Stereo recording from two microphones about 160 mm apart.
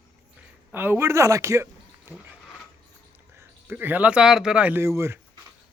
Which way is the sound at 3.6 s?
10° right (ahead or behind).